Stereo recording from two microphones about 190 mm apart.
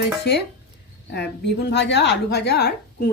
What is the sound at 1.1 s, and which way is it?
A woman's voice, 60° left (ahead or behind).